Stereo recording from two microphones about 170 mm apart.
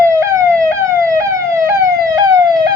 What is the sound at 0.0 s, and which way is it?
Emergency vehicle, 20° right (ahead or behind).